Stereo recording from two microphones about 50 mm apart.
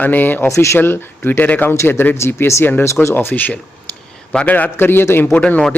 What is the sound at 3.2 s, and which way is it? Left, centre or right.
A man's voice, left.